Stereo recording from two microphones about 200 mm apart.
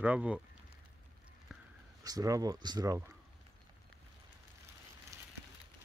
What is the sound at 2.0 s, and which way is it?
Speech, 15° right (ahead or behind).